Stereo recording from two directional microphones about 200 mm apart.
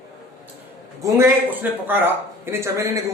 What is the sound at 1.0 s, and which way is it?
Speech, 15° right (ahead or behind).